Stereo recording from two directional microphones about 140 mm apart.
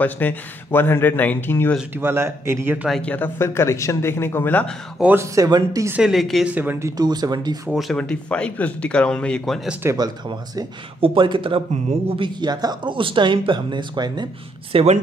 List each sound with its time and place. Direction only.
0.0 s speech: 10° left (ahead or behind)
2.0 s speech: 15° right (ahead or behind)
2.9 s speech: 10° left (ahead or behind)
4.9 s speech: 15° right (ahead or behind)
5.9 s a woman's voice: 5° right (ahead or behind)
6.5 s speech: 15° right (ahead or behind)
7.0 s speech: 30° right (ahead or behind)
7.7 s speech: 5° left (ahead or behind)
9.8 s speech: 30° right (ahead or behind)
14.7 s speech: 45° right (ahead or behind)